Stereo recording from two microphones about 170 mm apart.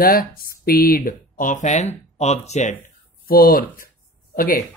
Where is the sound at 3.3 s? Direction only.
60° left (ahead or behind).